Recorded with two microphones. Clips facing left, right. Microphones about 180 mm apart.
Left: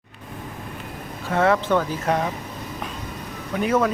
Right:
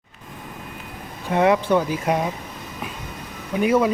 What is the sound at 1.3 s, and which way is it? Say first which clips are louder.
Speech: right 2 dB; 15° right (ahead or behind).